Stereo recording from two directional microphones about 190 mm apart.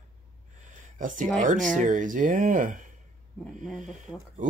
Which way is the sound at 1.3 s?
45° right (ahead or behind).